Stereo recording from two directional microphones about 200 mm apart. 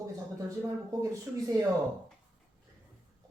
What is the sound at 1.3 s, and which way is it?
Speech, 5° right (ahead or behind).